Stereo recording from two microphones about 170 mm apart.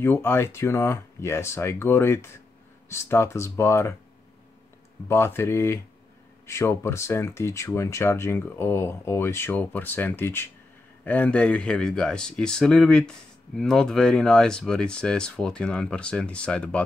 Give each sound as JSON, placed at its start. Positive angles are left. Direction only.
{"t": 0.0, "sound": "speech", "side_deg": 15}
{"t": 5.0, "sound": "speech", "side_deg": 15}